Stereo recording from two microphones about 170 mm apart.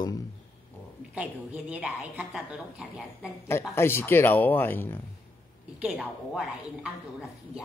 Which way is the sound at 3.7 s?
15° left (ahead or behind).